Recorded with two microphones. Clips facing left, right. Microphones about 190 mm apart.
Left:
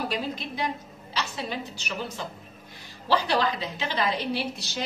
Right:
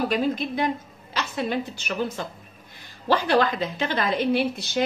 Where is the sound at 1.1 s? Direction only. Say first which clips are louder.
Right 6 dB; 55° right (ahead or behind).